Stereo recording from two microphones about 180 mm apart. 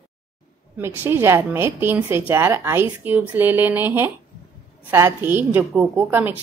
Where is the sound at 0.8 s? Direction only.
10° right (ahead or behind).